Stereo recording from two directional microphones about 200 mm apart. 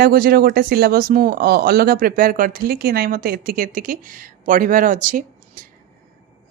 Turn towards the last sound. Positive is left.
turn(degrees=-45)  # may be behind; listen again after turning